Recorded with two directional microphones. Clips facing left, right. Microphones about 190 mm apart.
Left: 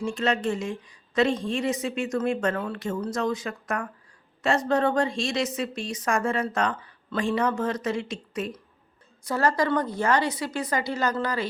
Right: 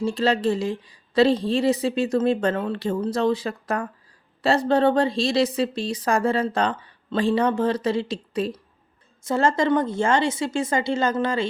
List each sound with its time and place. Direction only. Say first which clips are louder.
0.0 s a woman's voice: right 4 dB; 35° right (ahead or behind)